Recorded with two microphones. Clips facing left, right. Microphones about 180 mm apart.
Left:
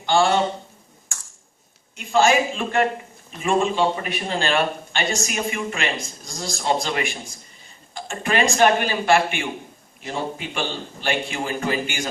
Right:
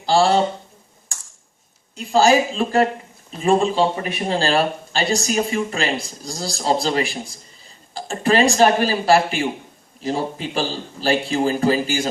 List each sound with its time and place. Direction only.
0.0 s speech: 35° right (ahead or behind)
2.0 s speech: 35° right (ahead or behind)